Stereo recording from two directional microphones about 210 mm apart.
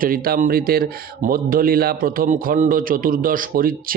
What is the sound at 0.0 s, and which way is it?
A man's voice, 45° right (ahead or behind).